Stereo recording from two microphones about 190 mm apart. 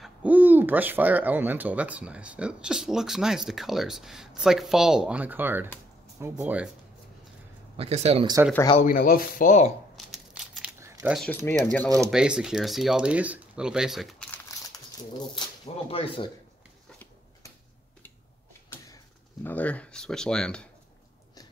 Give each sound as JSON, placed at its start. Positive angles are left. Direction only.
{"t": 0.0, "sound": "speech", "side_deg": -10}
{"t": 7.7, "sound": "speech", "side_deg": -30}
{"t": 8.8, "sound": "speech", "side_deg": 50}
{"t": 9.9, "sound": "a sound", "side_deg": 0}
{"t": 10.8, "sound": "a sound", "side_deg": -15}
{"t": 11.1, "sound": "speech", "side_deg": 10}
{"t": 12.1, "sound": "speech", "side_deg": -5}
{"t": 15.9, "sound": "speech", "side_deg": 30}
{"t": 19.4, "sound": "speech", "side_deg": 10}